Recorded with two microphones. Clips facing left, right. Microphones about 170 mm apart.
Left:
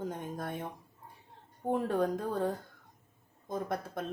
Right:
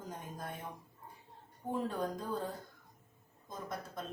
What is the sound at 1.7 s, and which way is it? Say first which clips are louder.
Speech: left 6 dB; 65° left (ahead or behind).